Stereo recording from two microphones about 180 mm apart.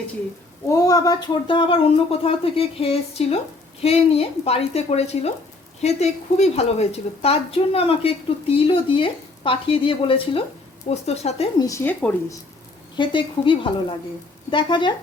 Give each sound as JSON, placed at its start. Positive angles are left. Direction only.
{"t": 0.7, "sound": "a woman's voice", "side_deg": 20}
{"t": 11.6, "sound": "speech", "side_deg": 15}
{"t": 13.0, "sound": "speech", "side_deg": 25}